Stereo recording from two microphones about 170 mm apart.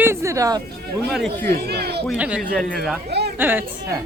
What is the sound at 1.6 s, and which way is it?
Speech, 70° right (ahead or behind).